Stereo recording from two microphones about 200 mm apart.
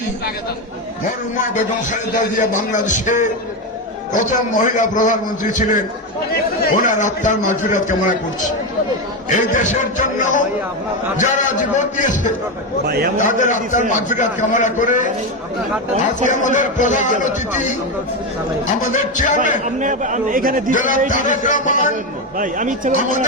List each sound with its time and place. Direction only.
1.4 s a man's voice: 40° left (ahead or behind)
16.3 s a man's voice: 40° left (ahead or behind)
18.8 s a man's voice: 40° left (ahead or behind)
19.8 s a man's voice: 40° right (ahead or behind)
20.7 s a man's voice: 40° left (ahead or behind)
22.4 s a man's voice: 40° right (ahead or behind)